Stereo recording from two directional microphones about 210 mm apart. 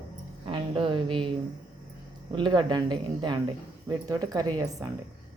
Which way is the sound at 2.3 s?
20° right (ahead or behind).